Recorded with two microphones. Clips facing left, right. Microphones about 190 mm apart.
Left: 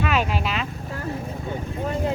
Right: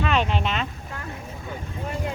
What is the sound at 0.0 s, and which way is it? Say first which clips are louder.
Vehicle: even; 5° left (ahead or behind).